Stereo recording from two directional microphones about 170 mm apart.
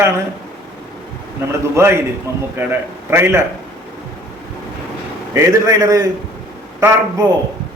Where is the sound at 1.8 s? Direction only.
15° right (ahead or behind).